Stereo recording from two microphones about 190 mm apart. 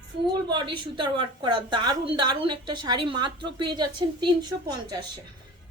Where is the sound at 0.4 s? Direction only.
25° right (ahead or behind).